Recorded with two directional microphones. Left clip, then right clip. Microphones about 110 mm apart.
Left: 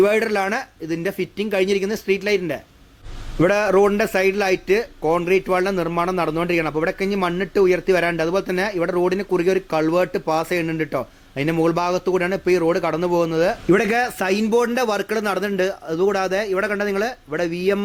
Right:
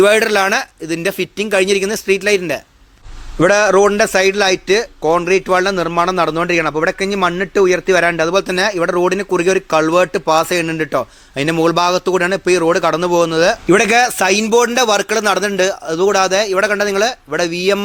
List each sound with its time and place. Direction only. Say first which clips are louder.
0.0 s a man's voice: right 7 dB; 25° right (ahead or behind)